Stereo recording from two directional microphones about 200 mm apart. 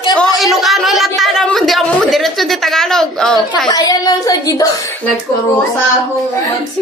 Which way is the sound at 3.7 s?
20° left (ahead or behind).